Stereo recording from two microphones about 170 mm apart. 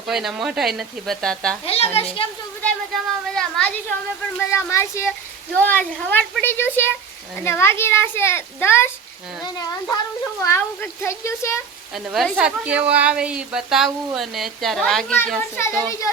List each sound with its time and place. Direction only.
0.1 s a woman's voice: centre (ahead or behind)
1.6 s a woman's voice: 35° left (ahead or behind)
2.6 s a woman's voice: 5° left (ahead or behind)
4.4 s speech: 15° left (ahead or behind)
10.4 s speech: 15° left (ahead or behind)
11.9 s a woman's voice: centre (ahead or behind)
15.5 s a child's voice: 15° left (ahead or behind)